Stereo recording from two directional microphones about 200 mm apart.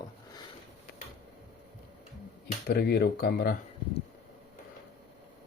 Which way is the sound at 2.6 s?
50° left (ahead or behind).